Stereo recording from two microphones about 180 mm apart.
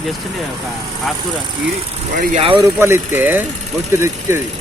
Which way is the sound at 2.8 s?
15° right (ahead or behind).